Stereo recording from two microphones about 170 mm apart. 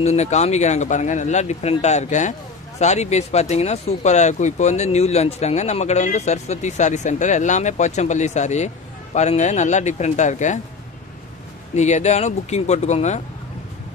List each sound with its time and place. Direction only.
0.0 s speech: 40° left (ahead or behind)
11.7 s speech: 40° left (ahead or behind)